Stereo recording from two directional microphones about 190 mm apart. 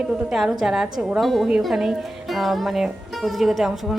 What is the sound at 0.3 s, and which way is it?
A woman's voice, 5° right (ahead or behind).